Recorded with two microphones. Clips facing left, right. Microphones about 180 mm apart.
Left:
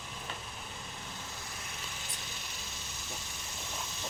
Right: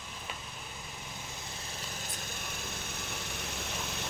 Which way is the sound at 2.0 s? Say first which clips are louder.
Right 4 dB; 55° right (ahead or behind).